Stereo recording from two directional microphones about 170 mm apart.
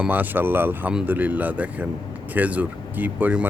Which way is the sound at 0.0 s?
10° right (ahead or behind).